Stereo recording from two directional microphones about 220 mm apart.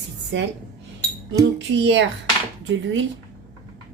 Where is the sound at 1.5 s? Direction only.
55° right (ahead or behind).